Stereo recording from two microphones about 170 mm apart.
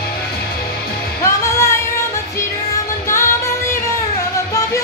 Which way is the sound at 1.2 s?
15° left (ahead or behind).